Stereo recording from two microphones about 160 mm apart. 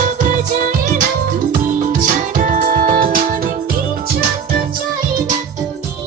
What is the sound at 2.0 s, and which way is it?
Music, 55° right (ahead or behind).